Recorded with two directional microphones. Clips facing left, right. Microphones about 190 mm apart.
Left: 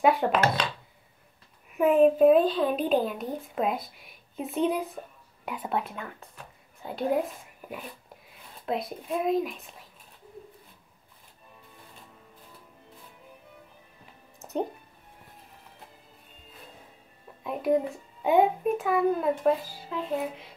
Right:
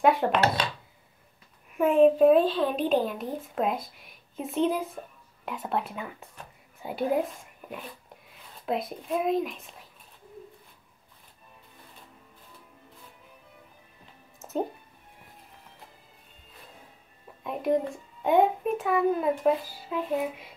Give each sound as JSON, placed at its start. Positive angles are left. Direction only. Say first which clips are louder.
{"t": 0.0, "sound": "a child's voice", "louder": "even", "side_deg": 0}
{"t": 1.7, "sound": "a child's voice", "louder": "even", "side_deg": 5}
{"t": 14.4, "sound": "a sound", "louder": "even", "side_deg": 0}
{"t": 17.4, "sound": "a child's voice", "louder": "left 1 dB", "side_deg": 0}